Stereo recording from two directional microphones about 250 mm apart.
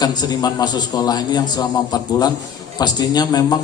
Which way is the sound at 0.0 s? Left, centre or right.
Centre.